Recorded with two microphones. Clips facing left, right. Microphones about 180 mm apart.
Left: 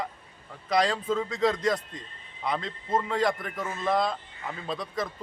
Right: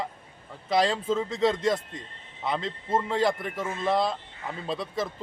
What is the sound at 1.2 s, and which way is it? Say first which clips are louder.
Speech: right 1 dB; 25° right (ahead or behind).